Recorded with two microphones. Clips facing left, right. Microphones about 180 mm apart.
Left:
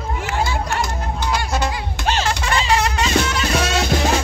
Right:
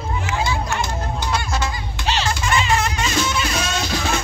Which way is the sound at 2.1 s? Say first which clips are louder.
Left 1 dB; 50° left (ahead or behind).